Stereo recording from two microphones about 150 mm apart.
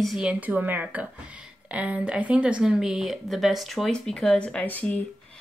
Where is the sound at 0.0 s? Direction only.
5° right (ahead or behind).